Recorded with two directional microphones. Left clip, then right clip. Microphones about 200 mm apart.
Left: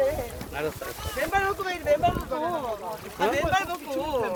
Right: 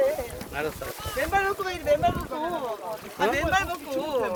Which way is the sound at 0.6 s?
20° right (ahead or behind).